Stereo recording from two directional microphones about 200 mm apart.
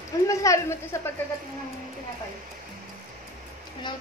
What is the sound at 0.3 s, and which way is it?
Speech, 15° left (ahead or behind).